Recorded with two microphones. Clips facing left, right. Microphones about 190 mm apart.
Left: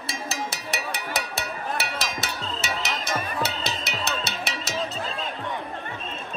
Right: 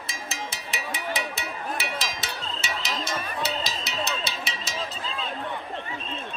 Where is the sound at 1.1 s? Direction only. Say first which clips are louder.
Left 1 dB; 70° left (ahead or behind).